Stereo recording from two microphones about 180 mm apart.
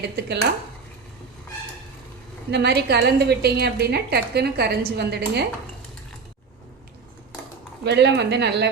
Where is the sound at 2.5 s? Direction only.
70° right (ahead or behind).